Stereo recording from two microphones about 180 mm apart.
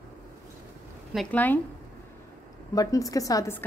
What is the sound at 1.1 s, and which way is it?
Speech, 5° left (ahead or behind).